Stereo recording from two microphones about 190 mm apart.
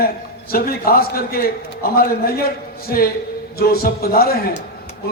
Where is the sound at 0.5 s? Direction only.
50° left (ahead or behind).